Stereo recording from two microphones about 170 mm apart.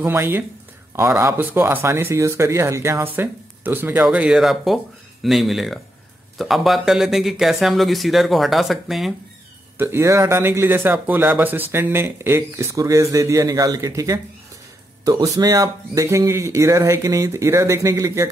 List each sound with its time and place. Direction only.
0.0 s speech: 15° right (ahead or behind)
9.8 s speech: 15° right (ahead or behind)